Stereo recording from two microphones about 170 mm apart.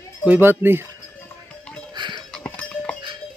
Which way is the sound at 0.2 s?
10° right (ahead or behind).